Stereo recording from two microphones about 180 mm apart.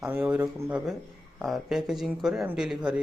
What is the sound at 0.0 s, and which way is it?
Speech, 10° right (ahead or behind).